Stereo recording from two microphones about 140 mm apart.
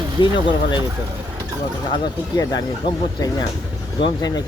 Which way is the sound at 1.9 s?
30° left (ahead or behind).